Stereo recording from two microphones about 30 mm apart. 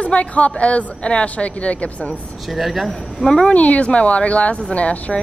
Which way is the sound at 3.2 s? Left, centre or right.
Left.